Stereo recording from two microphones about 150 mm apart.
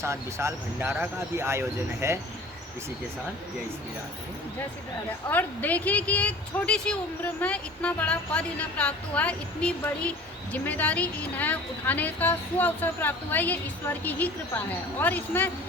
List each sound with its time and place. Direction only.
0.0 s speech: 20° right (ahead or behind)
5.3 s a woman's voice: 10° left (ahead or behind)